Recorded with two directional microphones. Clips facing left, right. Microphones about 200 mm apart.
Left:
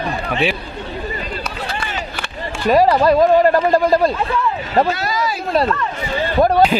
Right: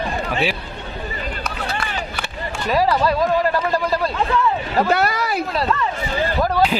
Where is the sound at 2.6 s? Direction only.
55° left (ahead or behind).